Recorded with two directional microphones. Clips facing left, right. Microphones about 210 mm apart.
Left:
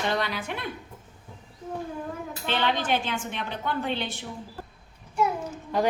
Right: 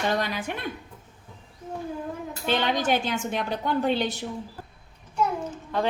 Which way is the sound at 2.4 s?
45° right (ahead or behind).